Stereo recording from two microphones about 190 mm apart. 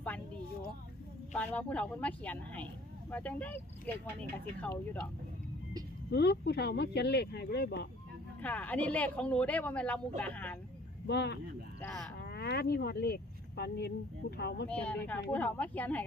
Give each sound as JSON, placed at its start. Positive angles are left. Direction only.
{"t": 1.3, "sound": "speech", "side_deg": 5}
{"t": 6.1, "sound": "speech", "side_deg": 60}
{"t": 8.4, "sound": "speech", "side_deg": 10}
{"t": 11.0, "sound": "speech", "side_deg": 60}
{"t": 14.7, "sound": "speech", "side_deg": 5}